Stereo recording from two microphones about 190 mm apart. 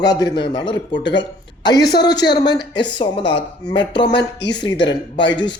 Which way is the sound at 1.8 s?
60° left (ahead or behind).